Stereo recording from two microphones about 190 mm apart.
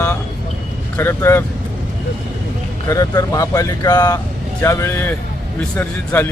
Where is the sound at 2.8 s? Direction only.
15° left (ahead or behind).